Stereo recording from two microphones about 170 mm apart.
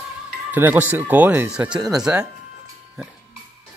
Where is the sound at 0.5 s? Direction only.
10° right (ahead or behind).